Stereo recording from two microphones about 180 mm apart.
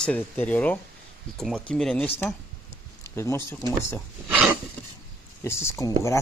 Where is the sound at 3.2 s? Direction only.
15° left (ahead or behind).